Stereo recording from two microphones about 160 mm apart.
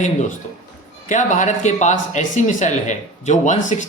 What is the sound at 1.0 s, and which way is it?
Speech, 50° left (ahead or behind).